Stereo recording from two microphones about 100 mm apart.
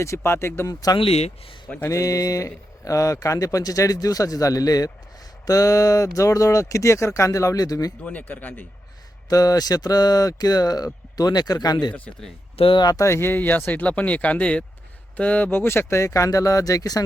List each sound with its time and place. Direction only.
0.0 s speech: 25° left (ahead or behind)
0.7 s speech: 40° left (ahead or behind)
0.9 s speech: 80° left
1.9 s speech: 35° left (ahead or behind)
8.0 s speech: 15° left (ahead or behind)
9.3 s speech: 35° left (ahead or behind)
12.5 s speech: 65° left (ahead or behind)
12.8 s speech: 40° left (ahead or behind)
13.1 s speech: 25° left (ahead or behind)